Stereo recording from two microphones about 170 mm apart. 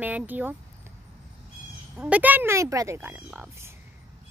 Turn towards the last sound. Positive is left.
turn(degrees=-15)  # may be behind; listen again after turning